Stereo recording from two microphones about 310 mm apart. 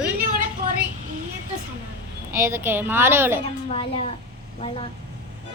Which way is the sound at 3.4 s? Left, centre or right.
Centre.